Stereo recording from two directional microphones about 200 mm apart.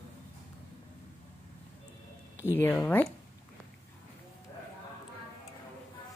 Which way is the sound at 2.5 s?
10° left (ahead or behind).